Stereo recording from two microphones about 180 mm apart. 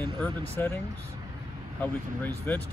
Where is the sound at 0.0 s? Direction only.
10° left (ahead or behind).